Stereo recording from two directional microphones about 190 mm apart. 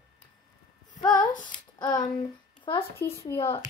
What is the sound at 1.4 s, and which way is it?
Speech, 20° left (ahead or behind).